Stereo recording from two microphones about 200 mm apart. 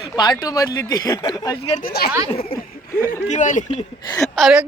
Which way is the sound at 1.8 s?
50° left (ahead or behind).